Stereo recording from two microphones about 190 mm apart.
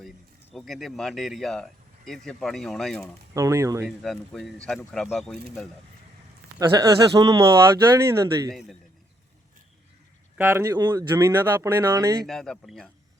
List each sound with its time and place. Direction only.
0.5 s speech: centre (ahead or behind)
3.3 s speech: 15° right (ahead or behind)
3.8 s speech: centre (ahead or behind)
6.6 s speech: 20° right (ahead or behind)
10.3 s speech: 10° right (ahead or behind)
12.2 s speech: centre (ahead or behind)